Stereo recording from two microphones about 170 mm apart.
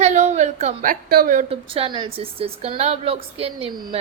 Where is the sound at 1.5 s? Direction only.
30° right (ahead or behind).